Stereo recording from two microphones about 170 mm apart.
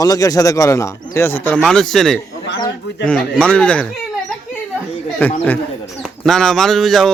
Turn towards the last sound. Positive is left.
turn(degrees=0)  # may be behind; listen again after turning